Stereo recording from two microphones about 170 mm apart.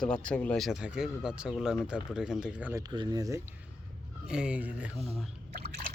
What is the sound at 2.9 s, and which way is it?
Speech, 25° right (ahead or behind).